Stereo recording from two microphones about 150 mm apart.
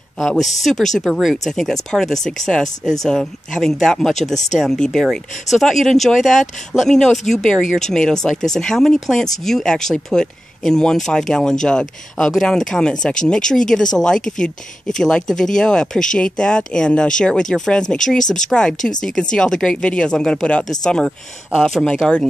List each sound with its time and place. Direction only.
0.2 s speech: centre (ahead or behind)
4.2 s speech: 50° left (ahead or behind)
4.6 s speech: 5° left (ahead or behind)